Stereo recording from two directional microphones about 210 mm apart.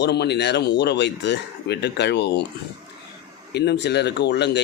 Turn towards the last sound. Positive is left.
turn(degrees=55)  # may be behind; listen again after turning